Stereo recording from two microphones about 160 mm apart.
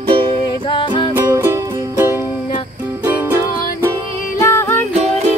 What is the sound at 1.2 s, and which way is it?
Music, 15° right (ahead or behind).